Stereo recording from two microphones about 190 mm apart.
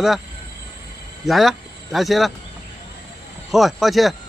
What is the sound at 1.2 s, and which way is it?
Speech, centre (ahead or behind).